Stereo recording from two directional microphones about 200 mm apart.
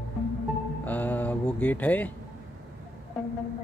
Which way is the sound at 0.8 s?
10° left (ahead or behind).